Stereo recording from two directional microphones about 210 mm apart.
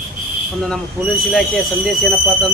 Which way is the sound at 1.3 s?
Centre (ahead or behind).